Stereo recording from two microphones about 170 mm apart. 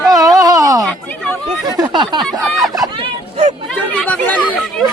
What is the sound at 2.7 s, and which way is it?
Vehicle, 20° right (ahead or behind).